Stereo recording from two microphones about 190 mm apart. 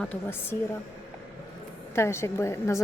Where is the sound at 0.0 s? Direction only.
10° left (ahead or behind).